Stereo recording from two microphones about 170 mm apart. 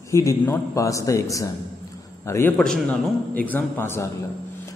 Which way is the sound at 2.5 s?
5° left (ahead or behind).